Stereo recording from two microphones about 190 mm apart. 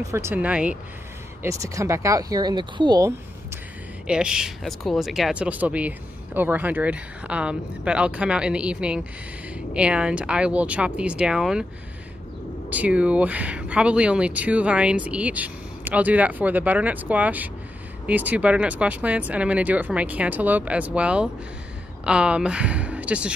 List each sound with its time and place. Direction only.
0.1 s speech: 10° right (ahead or behind)
4.1 s speech: 5° right (ahead or behind)
12.6 s speech: 10° right (ahead or behind)